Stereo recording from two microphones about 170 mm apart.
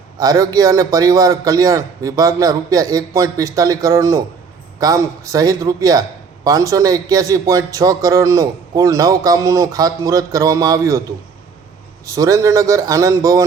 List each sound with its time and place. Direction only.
0.2 s a man's voice: 20° right (ahead or behind)
12.0 s a man's voice: 20° right (ahead or behind)